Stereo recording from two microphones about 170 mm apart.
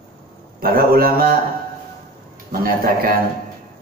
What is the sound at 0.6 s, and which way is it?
Speech, 60° right (ahead or behind).